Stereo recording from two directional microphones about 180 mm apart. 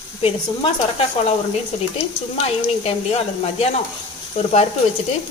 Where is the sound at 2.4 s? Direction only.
35° left (ahead or behind).